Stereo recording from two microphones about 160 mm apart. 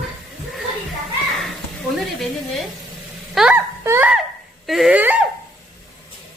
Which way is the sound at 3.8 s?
15° right (ahead or behind).